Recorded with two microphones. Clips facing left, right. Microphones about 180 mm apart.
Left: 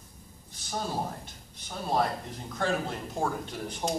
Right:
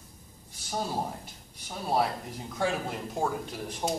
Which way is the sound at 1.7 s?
5° right (ahead or behind).